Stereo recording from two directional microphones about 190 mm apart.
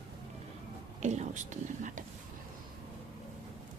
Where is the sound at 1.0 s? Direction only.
40° right (ahead or behind).